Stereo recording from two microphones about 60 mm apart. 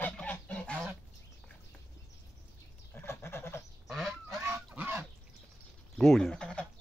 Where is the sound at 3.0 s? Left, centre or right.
Left.